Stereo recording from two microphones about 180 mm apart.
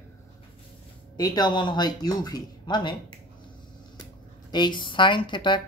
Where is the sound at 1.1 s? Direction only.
20° left (ahead or behind).